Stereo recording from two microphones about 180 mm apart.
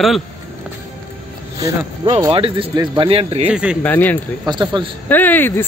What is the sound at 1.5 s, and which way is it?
Speech, 20° right (ahead or behind).